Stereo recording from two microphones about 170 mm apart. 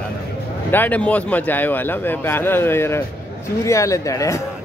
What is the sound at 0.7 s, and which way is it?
A man's voice, 10° left (ahead or behind).